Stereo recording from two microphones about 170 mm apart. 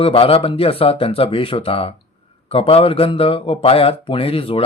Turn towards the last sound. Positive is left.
turn(degrees=35)  # may be behind; listen again after turning